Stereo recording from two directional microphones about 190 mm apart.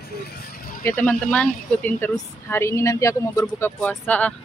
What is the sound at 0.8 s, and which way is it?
Speech, 10° left (ahead or behind).